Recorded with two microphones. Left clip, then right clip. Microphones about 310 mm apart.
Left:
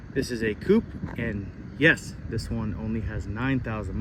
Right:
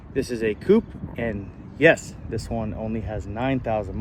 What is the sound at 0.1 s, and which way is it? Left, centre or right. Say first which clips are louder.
Speech: right 3 dB; centre.